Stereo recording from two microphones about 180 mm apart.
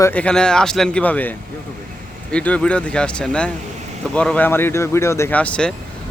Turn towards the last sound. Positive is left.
turn(degrees=5)  # may be behind; listen again after turning